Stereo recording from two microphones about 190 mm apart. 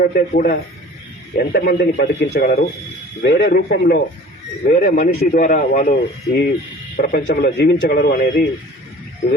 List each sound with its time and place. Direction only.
0.0 s a man's voice: 50° left (ahead or behind)